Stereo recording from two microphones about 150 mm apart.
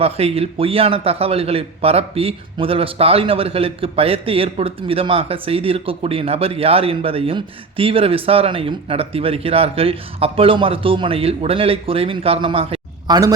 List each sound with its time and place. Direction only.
0.0 s a man's voice: 40° right (ahead or behind)